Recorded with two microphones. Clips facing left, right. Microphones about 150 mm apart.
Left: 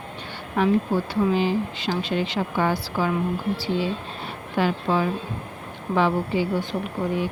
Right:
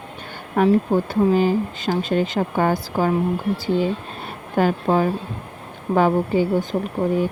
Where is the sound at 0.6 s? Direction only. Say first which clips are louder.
Right 4 dB; 50° right (ahead or behind).